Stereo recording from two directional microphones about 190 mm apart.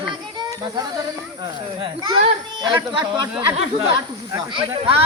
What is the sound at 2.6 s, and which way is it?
Speech, 25° right (ahead or behind).